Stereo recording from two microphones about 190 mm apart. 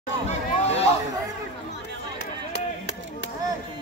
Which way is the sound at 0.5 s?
35° left (ahead or behind).